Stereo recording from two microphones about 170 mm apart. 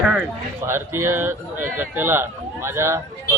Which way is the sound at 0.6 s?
15° right (ahead or behind).